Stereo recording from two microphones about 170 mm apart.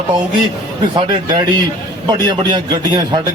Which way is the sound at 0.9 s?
30° right (ahead or behind).